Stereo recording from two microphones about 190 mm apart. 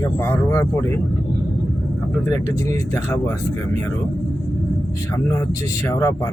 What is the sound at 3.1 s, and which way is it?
Speech, 15° left (ahead or behind).